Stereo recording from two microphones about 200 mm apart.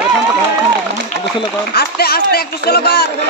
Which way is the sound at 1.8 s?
50° left (ahead or behind).